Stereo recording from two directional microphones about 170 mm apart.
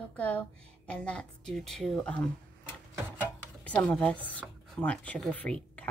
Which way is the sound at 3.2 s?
10° left (ahead or behind).